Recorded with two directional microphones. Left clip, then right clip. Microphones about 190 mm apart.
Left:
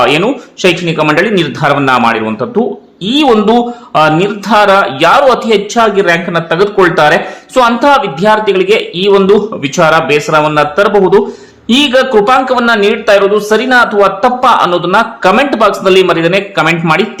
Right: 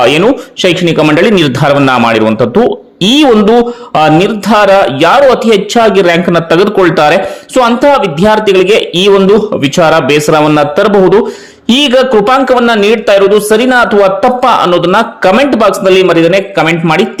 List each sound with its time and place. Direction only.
0.0 s speech: 30° right (ahead or behind)
3.4 s speech: 25° right (ahead or behind)
7.5 s a man's voice: 25° right (ahead or behind)